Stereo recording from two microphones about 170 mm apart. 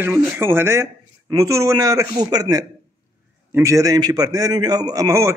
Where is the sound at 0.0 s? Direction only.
15° right (ahead or behind).